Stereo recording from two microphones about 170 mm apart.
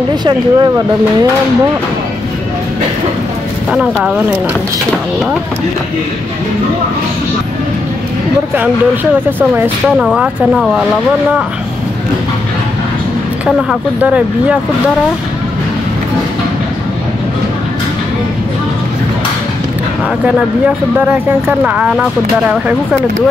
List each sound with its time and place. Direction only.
0.1 s speech: 25° right (ahead or behind)
3.7 s speech: 5° right (ahead or behind)
9.4 s speech: 10° right (ahead or behind)
13.7 s speech: 5° right (ahead or behind)
20.2 s speech: 5° right (ahead or behind)